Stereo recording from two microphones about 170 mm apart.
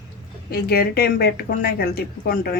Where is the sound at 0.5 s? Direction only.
65° left (ahead or behind).